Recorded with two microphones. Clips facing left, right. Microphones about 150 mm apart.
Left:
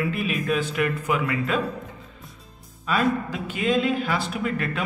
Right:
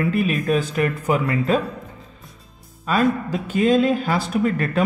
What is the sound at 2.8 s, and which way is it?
Speech, 40° right (ahead or behind).